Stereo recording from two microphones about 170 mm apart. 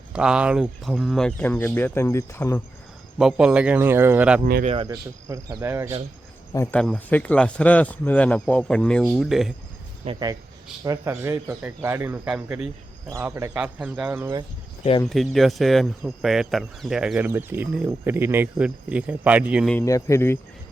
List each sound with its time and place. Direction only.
0.1 s speech: 5° right (ahead or behind); by 2.6 s 15° left (ahead or behind)
3.2 s speech: 5° right (ahead or behind)
4.6 s speech: 35° right (ahead or behind)
5.3 s speech: 20° right (ahead or behind)
6.5 s speech: 15° left (ahead or behind)
6.7 s speech: 5° left (ahead or behind)
10.0 s speech: 35° right (ahead or behind)
10.8 s a man's voice: 20° right (ahead or behind)
13.6 s speech: 5° right (ahead or behind)
15.0 s speech: centre (ahead or behind)
19.7 s speech: 15° left (ahead or behind)